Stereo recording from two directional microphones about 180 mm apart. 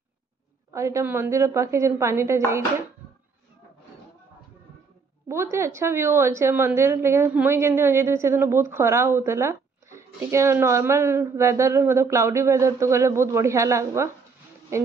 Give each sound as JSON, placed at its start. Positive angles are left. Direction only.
{"t": 0.7, "sound": "a woman's voice", "side_deg": -15}
{"t": 5.3, "sound": "a woman's voice", "side_deg": -15}